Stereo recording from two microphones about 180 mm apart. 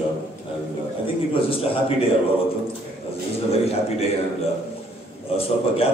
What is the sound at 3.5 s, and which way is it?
Speech, 35° left (ahead or behind).